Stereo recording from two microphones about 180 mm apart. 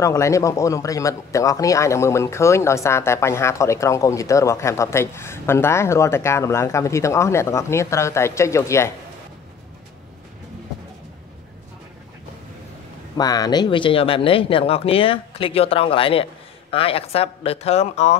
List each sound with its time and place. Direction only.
0.0 s speech: 15° left (ahead or behind)
13.2 s speech: 20° left (ahead or behind); by 18.1 s 35° left (ahead or behind)